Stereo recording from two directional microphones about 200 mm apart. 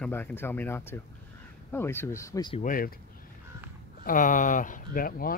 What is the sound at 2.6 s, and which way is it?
Speech, 45° left (ahead or behind).